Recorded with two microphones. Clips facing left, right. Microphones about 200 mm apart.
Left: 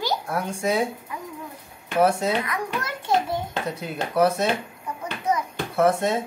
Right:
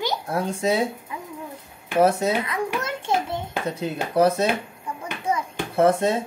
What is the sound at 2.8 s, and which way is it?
Speech, 25° right (ahead or behind).